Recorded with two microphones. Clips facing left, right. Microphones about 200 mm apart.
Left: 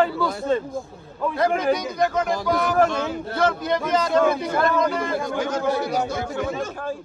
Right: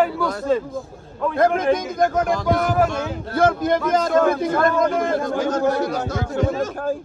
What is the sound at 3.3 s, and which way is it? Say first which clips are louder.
A man's voice: right 5 dB; 50° right (ahead or behind).